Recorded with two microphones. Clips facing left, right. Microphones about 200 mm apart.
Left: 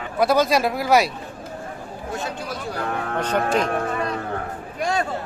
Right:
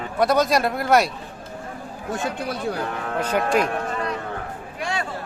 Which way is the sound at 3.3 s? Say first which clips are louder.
Right 1 dB; 10° right (ahead or behind).